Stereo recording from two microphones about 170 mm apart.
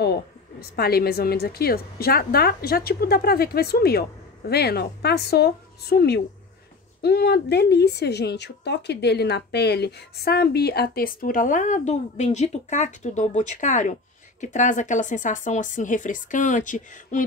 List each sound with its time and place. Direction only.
0.0 s a woman's voice: 70° left (ahead or behind); by 17.2 s 50° left (ahead or behind)